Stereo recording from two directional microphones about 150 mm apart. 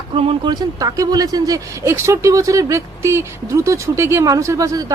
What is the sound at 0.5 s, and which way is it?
Speech, 25° right (ahead or behind).